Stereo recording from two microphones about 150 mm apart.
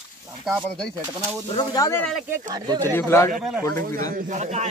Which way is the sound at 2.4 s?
30° right (ahead or behind).